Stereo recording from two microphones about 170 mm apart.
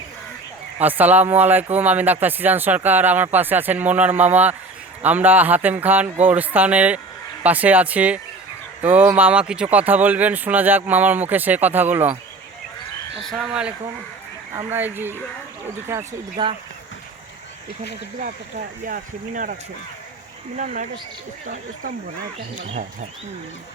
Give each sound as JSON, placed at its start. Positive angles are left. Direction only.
{"t": 0.8, "sound": "speech", "side_deg": -10}
{"t": 13.3, "sound": "speech", "side_deg": -5}
{"t": 16.4, "sound": "speech", "side_deg": -30}
{"t": 18.9, "sound": "speech", "side_deg": -50}
{"t": 20.6, "sound": "speech", "side_deg": -50}